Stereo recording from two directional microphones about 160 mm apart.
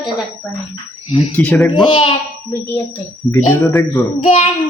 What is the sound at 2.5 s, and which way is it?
Child singing, 15° left (ahead or behind).